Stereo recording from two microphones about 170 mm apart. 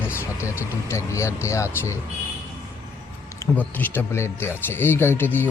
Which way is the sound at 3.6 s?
10° left (ahead or behind).